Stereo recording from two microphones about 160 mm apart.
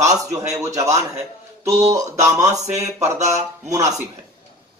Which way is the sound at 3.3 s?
20° right (ahead or behind).